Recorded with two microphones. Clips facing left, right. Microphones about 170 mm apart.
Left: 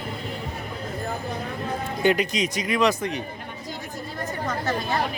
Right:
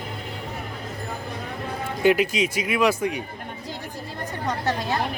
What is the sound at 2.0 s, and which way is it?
Speech, 5° right (ahead or behind).